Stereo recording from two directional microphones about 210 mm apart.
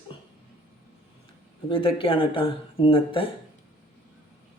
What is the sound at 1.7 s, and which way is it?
Speech, 25° left (ahead or behind).